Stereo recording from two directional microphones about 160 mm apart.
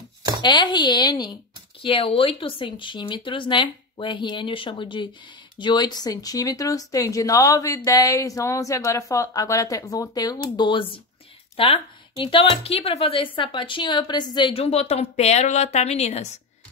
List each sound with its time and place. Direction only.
0.4 s speech: 30° left (ahead or behind)